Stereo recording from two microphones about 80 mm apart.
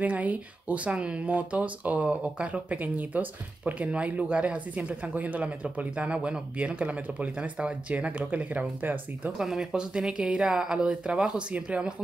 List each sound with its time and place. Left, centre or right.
0.0 s speech: centre
9.4 s speech: centre